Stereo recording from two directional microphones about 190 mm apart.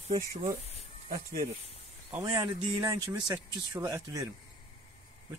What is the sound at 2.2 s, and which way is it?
Speech, 20° right (ahead or behind).